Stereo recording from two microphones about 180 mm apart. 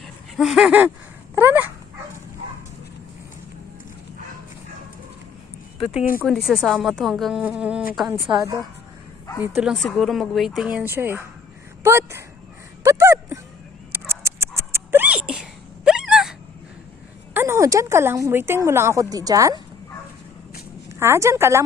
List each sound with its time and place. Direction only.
0.3 s speech: 5° right (ahead or behind)
6.1 s speech: centre (ahead or behind)
8.3 s speech: 20° right (ahead or behind)
9.6 s speech: centre (ahead or behind)
12.8 s a sound: 15° right (ahead or behind)
14.1 s dog: 15° right (ahead or behind)
17.3 s speech: 15° right (ahead or behind)
21.0 s speech: 15° right (ahead or behind)